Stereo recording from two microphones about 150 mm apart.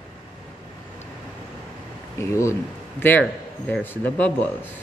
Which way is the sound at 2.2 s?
20° left (ahead or behind).